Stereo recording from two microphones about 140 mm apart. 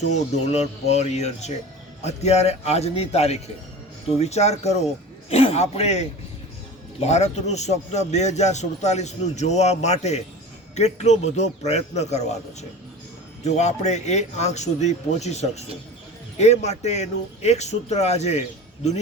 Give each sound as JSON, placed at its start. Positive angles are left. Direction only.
{"t": 0.4, "sound": "speech", "side_deg": 50}
{"t": 13.4, "sound": "speech", "side_deg": 55}